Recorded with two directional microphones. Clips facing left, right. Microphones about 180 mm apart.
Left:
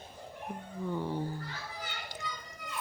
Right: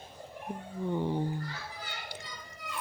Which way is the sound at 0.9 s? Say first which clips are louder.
Right 4 dB; 20° right (ahead or behind).